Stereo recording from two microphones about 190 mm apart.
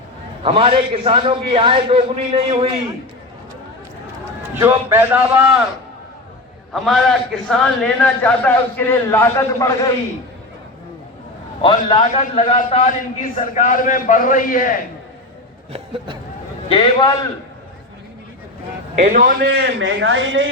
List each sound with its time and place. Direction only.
0.4 s a man's voice: 30° right (ahead or behind)
4.3 s a man's voice: 15° right (ahead or behind)
6.7 s a man's voice: centre (ahead or behind)
11.6 s a man's voice: 25° left (ahead or behind); by 14.8 s 45° left (ahead or behind)
15.7 s a man's voice: 25° right (ahead or behind)
16.6 s a man's voice: 25° left (ahead or behind)
19.0 s a man's voice: 45° right (ahead or behind); by 20.5 s 90° right